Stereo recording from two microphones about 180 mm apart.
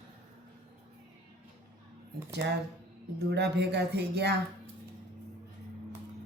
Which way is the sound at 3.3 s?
70° right (ahead or behind).